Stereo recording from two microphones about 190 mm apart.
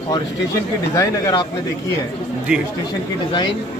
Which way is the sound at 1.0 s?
15° left (ahead or behind).